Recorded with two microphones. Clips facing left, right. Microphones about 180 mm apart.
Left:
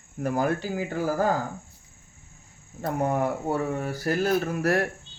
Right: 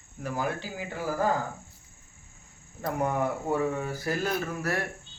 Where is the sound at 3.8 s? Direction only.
60° left (ahead or behind).